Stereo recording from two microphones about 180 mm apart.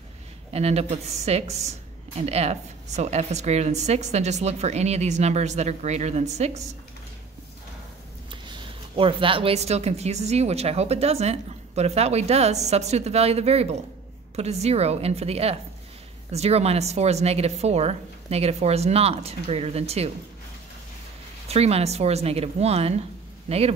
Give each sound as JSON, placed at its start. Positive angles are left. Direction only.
{"t": 0.5, "sound": "speech", "side_deg": -35}
{"t": 8.3, "sound": "speech", "side_deg": -30}
{"t": 21.5, "sound": "speech", "side_deg": -35}